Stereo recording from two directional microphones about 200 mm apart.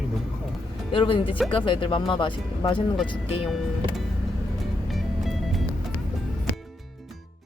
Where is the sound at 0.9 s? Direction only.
25° left (ahead or behind).